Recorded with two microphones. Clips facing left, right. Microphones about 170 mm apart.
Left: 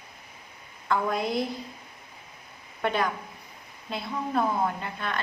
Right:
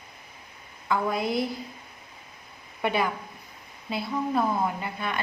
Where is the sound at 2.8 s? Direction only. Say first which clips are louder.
Right 1 dB; 10° right (ahead or behind).